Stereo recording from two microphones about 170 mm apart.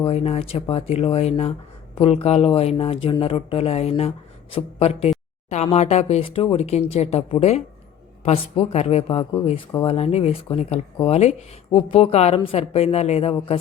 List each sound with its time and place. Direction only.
0.0 s a woman's voice: 35° left (ahead or behind)